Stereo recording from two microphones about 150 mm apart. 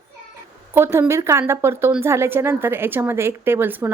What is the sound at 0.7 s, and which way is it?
A woman's voice, 20° right (ahead or behind).